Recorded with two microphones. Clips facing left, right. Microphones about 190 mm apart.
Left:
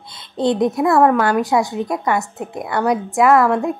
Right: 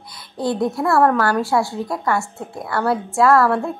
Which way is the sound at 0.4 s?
20° left (ahead or behind).